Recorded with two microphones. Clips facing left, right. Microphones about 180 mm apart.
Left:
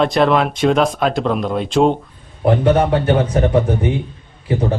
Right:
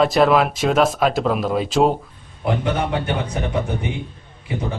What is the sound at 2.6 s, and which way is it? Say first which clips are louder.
Speech: left 7 dB; 40° left (ahead or behind).